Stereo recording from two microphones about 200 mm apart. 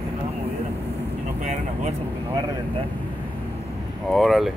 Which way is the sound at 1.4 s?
35° right (ahead or behind).